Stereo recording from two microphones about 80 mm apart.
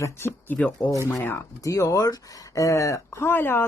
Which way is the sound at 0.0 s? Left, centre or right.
Left.